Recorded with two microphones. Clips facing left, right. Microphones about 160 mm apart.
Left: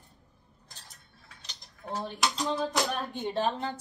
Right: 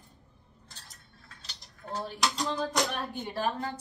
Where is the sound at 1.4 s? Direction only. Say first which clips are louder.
Even; 15° left (ahead or behind).